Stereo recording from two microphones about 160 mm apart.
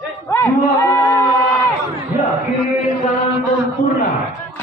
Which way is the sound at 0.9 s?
15° left (ahead or behind).